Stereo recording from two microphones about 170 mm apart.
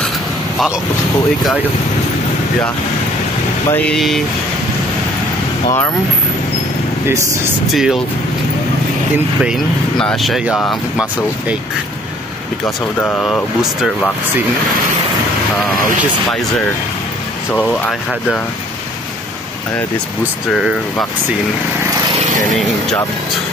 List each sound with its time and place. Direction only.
3.7 s speech: 5° left (ahead or behind)
7.7 s speech: centre (ahead or behind)
9.4 s speech: centre (ahead or behind)
10.5 s speech: 20° left (ahead or behind)
12.6 s speech: 10° left (ahead or behind)
17.6 s speech: 5° left (ahead or behind)
20.5 s speech: centre (ahead or behind)